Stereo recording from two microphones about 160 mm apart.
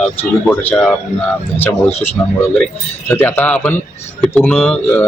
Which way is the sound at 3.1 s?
15° left (ahead or behind).